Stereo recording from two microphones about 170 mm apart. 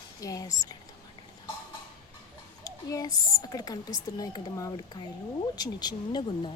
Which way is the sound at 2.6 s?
20° left (ahead or behind).